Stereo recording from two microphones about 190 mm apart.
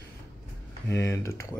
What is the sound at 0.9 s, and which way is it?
Typing, 15° left (ahead or behind).